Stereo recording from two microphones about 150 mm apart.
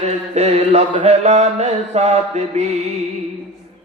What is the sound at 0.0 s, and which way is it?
Mantra, 45° right (ahead or behind).